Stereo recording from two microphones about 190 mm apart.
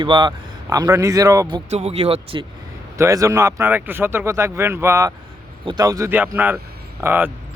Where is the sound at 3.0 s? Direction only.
15° right (ahead or behind).